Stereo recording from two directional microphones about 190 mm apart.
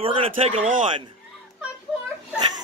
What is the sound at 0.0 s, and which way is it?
Speech, 30° right (ahead or behind).